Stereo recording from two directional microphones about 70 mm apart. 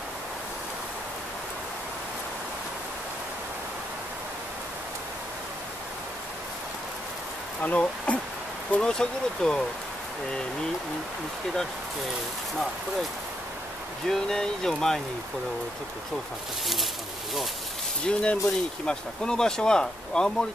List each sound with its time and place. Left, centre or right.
7.6 s speech: centre
14.0 s speech: centre
18.0 s speech: centre